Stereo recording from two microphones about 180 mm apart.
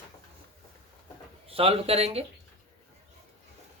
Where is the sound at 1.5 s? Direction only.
35° right (ahead or behind).